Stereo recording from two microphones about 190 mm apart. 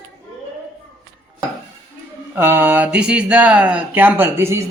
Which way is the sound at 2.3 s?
10° right (ahead or behind).